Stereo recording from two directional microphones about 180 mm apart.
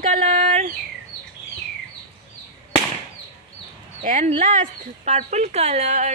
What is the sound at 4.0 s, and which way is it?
Speech, 45° right (ahead or behind).